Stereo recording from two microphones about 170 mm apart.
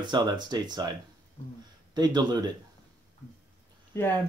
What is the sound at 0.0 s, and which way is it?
Speech, 25° right (ahead or behind).